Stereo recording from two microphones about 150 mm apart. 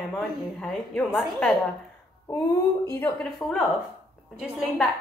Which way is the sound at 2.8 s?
10° left (ahead or behind).